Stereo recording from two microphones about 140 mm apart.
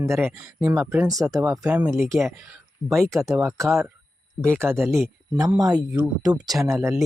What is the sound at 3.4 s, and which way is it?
Speech, 20° right (ahead or behind).